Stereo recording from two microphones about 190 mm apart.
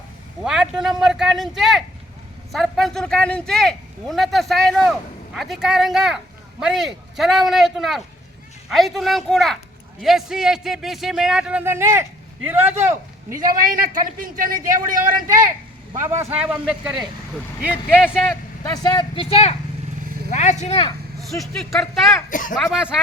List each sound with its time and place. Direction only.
0.4 s speech: 5° right (ahead or behind)
13.3 s a man's voice: 45° right (ahead or behind)
15.9 s a man's voice: 15° right (ahead or behind)
18.0 s speech: 5° right (ahead or behind)
18.6 s speech: 20° left (ahead or behind); by 20.8 s 35° left (ahead or behind)
21.2 s speech: centre (ahead or behind)
22.3 s speech: 45° left (ahead or behind)
22.5 s speech: centre (ahead or behind)